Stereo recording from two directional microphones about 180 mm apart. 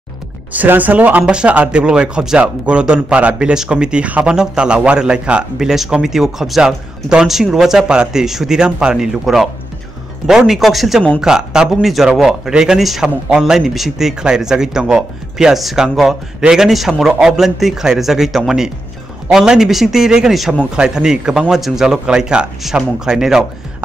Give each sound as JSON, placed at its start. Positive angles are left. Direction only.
{"t": 0.5, "sound": "speech", "side_deg": -10}